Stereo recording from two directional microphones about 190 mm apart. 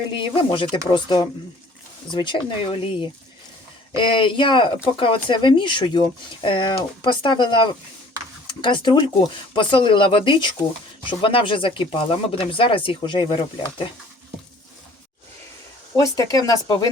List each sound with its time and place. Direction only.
0.1 s speech: 25° left (ahead or behind)
16.0 s speech: 20° left (ahead or behind)